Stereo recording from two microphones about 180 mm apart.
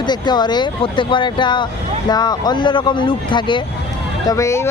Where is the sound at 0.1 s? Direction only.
25° left (ahead or behind).